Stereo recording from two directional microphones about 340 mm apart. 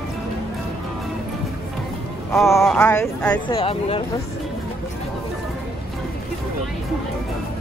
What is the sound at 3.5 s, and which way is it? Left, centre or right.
Speech, centre.